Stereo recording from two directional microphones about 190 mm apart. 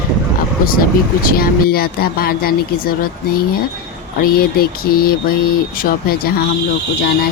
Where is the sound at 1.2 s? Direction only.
50° left (ahead or behind).